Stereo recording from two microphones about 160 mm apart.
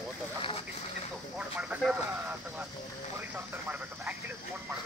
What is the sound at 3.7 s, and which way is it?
Speech, 10° right (ahead or behind).